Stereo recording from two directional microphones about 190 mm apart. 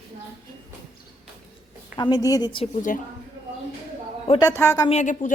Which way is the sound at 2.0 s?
20° left (ahead or behind).